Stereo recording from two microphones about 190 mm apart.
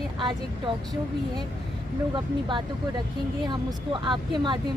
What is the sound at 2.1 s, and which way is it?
Speech, 25° right (ahead or behind).